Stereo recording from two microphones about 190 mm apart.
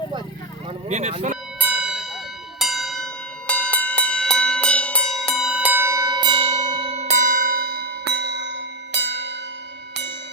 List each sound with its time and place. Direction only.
0.9 s speech: 35° right (ahead or behind)
1.5 s church bell: 5° right (ahead or behind)
2.6 s bell: centre (ahead or behind); by 9.3 s 65° right (ahead or behind)